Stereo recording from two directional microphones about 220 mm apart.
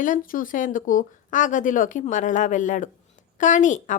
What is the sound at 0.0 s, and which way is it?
Speech, 40° left (ahead or behind).